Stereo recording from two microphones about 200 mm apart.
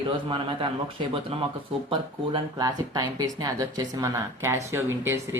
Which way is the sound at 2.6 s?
20° right (ahead or behind).